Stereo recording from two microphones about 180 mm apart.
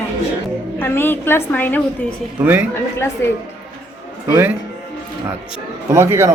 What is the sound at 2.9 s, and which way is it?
Speech, 15° left (ahead or behind).